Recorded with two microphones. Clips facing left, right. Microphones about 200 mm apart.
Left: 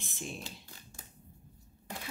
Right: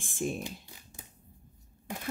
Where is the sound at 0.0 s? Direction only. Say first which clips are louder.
Right 9 dB; 50° right (ahead or behind).